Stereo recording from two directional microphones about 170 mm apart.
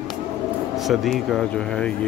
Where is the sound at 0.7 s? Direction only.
Centre (ahead or behind).